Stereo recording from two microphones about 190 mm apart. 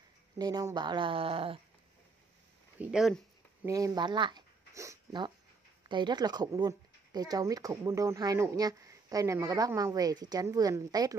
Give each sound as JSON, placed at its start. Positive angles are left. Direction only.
{"t": 0.4, "sound": "speech", "side_deg": -20}
{"t": 2.8, "sound": "speech", "side_deg": -5}
{"t": 3.6, "sound": "speech", "side_deg": -20}